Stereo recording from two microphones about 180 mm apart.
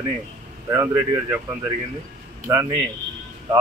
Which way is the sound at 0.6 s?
15° right (ahead or behind).